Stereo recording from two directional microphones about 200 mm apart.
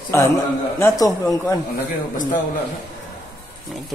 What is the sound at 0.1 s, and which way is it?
Speech, 15° left (ahead or behind).